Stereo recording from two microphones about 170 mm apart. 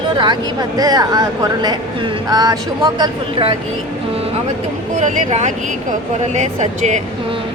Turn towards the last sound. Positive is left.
turn(degrees=-45)  # may be behind; listen again after turning